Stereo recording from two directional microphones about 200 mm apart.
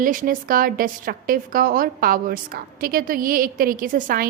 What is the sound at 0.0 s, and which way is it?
A woman's voice, 45° right (ahead or behind).